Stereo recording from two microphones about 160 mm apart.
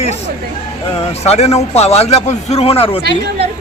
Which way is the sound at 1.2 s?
40° left (ahead or behind).